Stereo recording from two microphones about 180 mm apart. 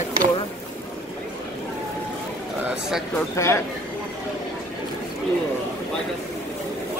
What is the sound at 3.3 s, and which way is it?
Speech, 15° left (ahead or behind).